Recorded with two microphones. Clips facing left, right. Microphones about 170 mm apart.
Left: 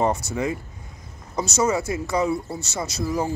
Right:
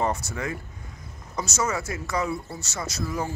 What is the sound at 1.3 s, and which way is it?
Speech, 30° left (ahead or behind).